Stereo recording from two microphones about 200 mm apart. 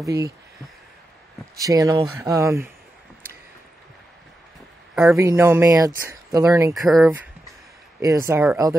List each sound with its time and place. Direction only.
0.0 s speech: 15° right (ahead or behind)
1.6 s speech: 15° right (ahead or behind)
5.1 s speech: 15° right (ahead or behind)
6.7 s speech: centre (ahead or behind)
8.0 s speech: 15° right (ahead or behind)